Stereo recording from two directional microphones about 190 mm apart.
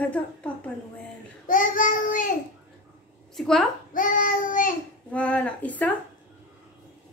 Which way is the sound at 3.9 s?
45° left (ahead or behind).